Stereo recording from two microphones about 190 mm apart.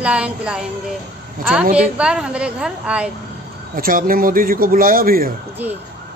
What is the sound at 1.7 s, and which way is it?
Speech, 5° right (ahead or behind).